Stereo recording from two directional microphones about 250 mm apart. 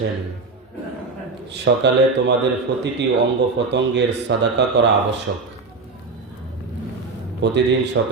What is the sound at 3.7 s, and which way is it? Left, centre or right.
Speech, right.